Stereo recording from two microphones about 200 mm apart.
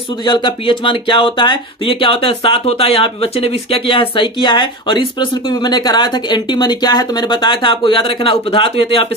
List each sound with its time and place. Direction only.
0.2 s speech: 25° left (ahead or behind)